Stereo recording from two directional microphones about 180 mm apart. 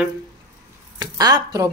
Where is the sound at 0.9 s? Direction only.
20° right (ahead or behind).